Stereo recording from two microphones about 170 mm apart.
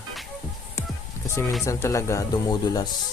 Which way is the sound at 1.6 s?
15° left (ahead or behind).